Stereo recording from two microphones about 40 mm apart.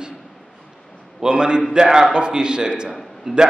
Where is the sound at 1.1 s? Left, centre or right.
Right.